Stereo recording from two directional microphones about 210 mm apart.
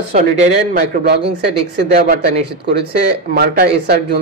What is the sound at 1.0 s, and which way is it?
Speech, 50° right (ahead or behind).